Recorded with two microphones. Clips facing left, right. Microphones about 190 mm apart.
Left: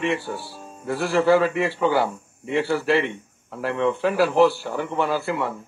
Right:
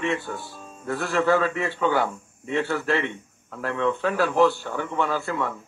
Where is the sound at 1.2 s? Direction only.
10° left (ahead or behind).